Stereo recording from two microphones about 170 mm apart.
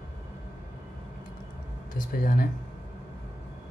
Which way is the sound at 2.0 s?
55° left (ahead or behind).